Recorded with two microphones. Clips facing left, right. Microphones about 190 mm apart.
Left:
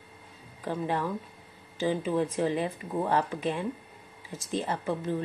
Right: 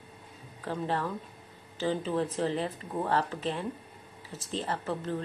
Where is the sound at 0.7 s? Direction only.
15° left (ahead or behind).